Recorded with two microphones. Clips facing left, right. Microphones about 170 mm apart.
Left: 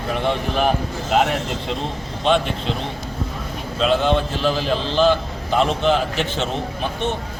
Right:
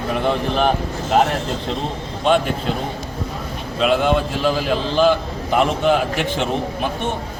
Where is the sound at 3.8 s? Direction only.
10° right (ahead or behind).